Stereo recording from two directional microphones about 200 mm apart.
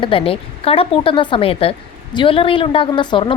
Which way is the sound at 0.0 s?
25° left (ahead or behind).